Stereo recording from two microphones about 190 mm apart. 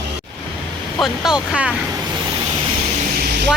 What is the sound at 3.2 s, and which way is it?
Vehicle, 60° right (ahead or behind).